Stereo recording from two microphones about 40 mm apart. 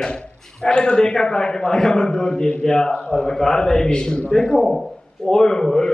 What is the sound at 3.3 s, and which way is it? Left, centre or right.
A man's voice, centre.